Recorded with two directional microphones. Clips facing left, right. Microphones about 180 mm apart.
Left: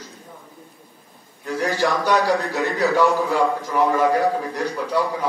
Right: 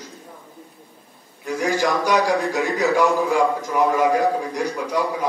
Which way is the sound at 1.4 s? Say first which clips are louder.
Even; 10° right (ahead or behind).